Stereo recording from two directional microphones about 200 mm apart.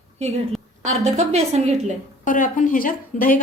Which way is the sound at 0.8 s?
35° right (ahead or behind).